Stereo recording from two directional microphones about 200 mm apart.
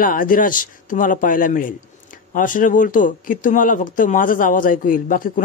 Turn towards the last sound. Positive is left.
turn(degrees=45)  # may be behind; listen again after turning